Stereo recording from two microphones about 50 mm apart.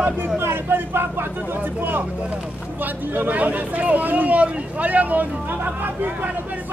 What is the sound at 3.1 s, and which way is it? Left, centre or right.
Speech, right.